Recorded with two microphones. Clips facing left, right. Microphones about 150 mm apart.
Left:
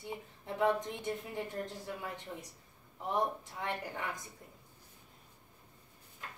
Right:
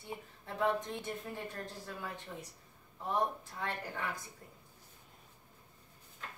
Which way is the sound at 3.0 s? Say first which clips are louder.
Left 1 dB; 20° left (ahead or behind).